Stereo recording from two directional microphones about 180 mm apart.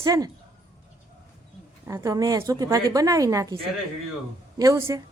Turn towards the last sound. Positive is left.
turn(degrees=-15)  # may be behind; listen again after turning